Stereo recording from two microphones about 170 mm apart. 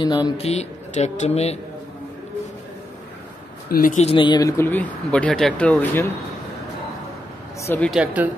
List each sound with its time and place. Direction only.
0.0 s speech: 25° left (ahead or behind)
0.5 s speech: 40° left (ahead or behind)
3.6 s speech: 60° left (ahead or behind)
4.0 s speech: 30° left (ahead or behind); by 6.0 s 10° left (ahead or behind)
7.6 s speech: 10° left (ahead or behind)
7.9 s speech: 10° right (ahead or behind)